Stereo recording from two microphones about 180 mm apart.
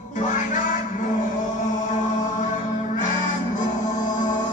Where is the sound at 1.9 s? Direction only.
40° left (ahead or behind).